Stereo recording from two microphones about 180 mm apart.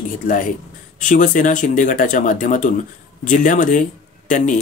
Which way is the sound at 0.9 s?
45° left (ahead or behind).